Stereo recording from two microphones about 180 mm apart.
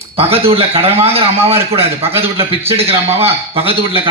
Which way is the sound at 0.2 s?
30° right (ahead or behind).